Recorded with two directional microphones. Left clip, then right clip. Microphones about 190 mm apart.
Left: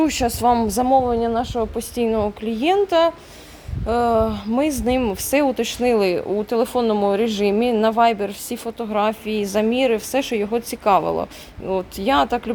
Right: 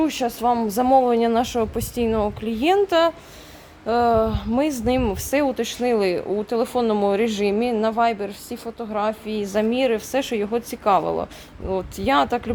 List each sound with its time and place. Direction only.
0.0 s speech: 15° left (ahead or behind)
0.9 s a woman's voice: 10° right (ahead or behind)